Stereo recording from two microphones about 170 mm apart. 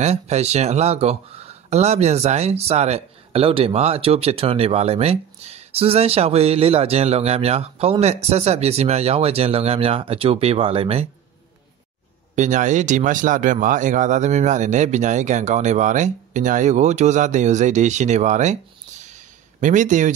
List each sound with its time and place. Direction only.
0.0 s speech: 40° right (ahead or behind)
12.4 s speech: 45° right (ahead or behind)
19.0 s a sound: 45° right (ahead or behind)